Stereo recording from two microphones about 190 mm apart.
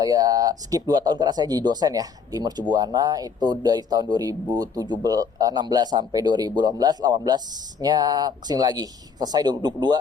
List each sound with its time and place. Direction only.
0.0 s speech: 20° right (ahead or behind)